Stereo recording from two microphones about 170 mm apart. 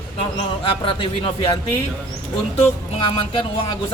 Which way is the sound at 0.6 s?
30° left (ahead or behind).